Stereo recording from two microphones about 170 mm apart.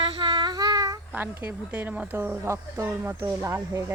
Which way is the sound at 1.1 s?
10° right (ahead or behind).